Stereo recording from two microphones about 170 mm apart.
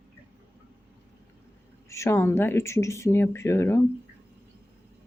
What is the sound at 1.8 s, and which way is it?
Speech, 15° left (ahead or behind).